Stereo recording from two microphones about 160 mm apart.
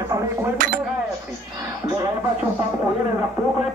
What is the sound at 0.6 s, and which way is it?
Speech, 60° right (ahead or behind).